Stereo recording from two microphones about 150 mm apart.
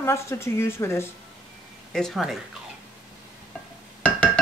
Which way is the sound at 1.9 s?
Centre (ahead or behind).